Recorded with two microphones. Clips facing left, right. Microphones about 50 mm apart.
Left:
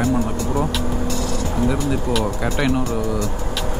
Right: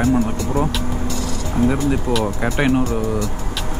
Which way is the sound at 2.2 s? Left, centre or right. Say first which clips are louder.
Right 2 dB; right.